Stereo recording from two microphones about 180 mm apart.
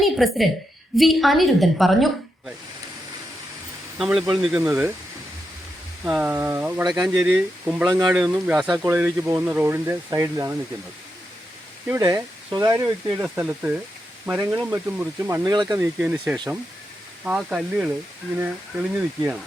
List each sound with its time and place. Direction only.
0.0 s a woman's voice: centre (ahead or behind)
3.9 s a woman's voice: 5° right (ahead or behind)
6.1 s a woman's voice: 10° right (ahead or behind)
8.6 s speech: 20° right (ahead or behind)
11.9 s speech: 15° right (ahead or behind)